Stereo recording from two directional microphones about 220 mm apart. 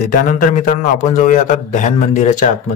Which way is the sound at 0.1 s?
40° left (ahead or behind).